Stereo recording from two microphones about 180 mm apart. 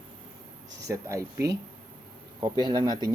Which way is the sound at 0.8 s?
15° right (ahead or behind).